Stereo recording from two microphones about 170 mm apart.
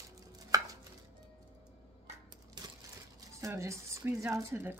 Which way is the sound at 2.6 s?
25° right (ahead or behind).